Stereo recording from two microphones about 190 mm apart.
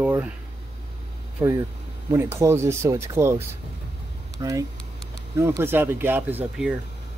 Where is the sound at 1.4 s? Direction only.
10° right (ahead or behind).